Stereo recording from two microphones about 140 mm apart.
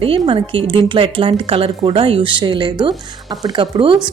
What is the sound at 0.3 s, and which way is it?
Speech, 40° right (ahead or behind).